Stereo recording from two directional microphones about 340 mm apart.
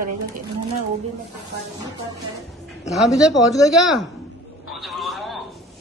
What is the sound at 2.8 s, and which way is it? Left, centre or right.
A man's voice, centre.